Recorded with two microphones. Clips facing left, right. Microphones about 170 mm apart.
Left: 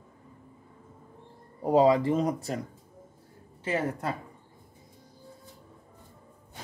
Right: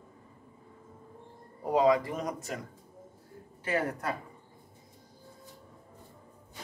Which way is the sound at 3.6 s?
25° left (ahead or behind).